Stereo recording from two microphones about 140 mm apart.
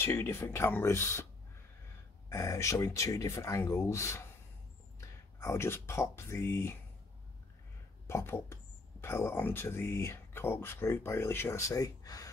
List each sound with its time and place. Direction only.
0.0 s speech: 20° left (ahead or behind)
2.2 s speech: 20° left (ahead or behind)
5.4 s speech: 20° left (ahead or behind)
8.1 s speech: 20° left (ahead or behind)